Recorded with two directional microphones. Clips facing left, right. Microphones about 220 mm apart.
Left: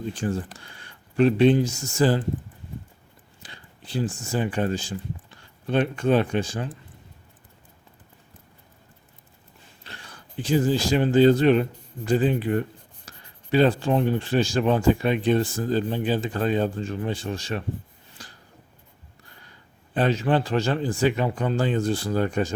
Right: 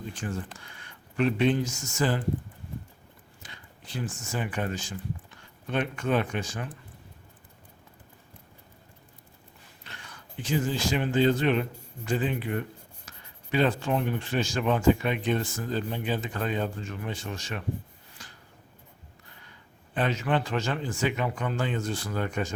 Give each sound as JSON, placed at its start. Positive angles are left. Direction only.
{"t": 0.1, "sound": "speech", "side_deg": 35}
{"t": 3.4, "sound": "speech", "side_deg": 30}
{"t": 9.8, "sound": "speech", "side_deg": 35}
{"t": 18.2, "sound": "a sound", "side_deg": 35}
{"t": 19.9, "sound": "speech", "side_deg": 35}